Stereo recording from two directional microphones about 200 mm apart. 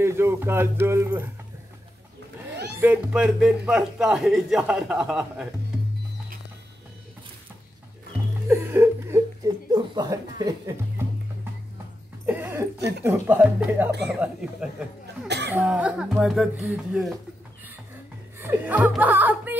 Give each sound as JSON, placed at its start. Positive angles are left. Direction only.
{"t": 0.0, "sound": "speech", "side_deg": -15}
{"t": 2.8, "sound": "a man's voice", "side_deg": -5}
{"t": 8.5, "sound": "speech", "side_deg": -10}
{"t": 9.8, "sound": "speech", "side_deg": -25}
{"t": 12.3, "sound": "a sound", "side_deg": -10}
{"t": 12.7, "sound": "speech", "side_deg": -55}
{"t": 13.0, "sound": "a man's voice", "side_deg": -5}
{"t": 15.2, "sound": "cough", "side_deg": -60}
{"t": 15.5, "sound": "a man's voice", "side_deg": -5}
{"t": 18.4, "sound": "speech", "side_deg": -10}